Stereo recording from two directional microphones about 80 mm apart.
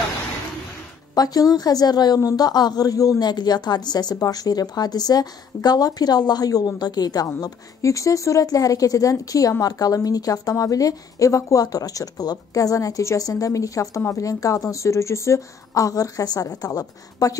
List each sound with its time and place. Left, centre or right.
1.1 s a woman's voice: left
7.2 s speech: left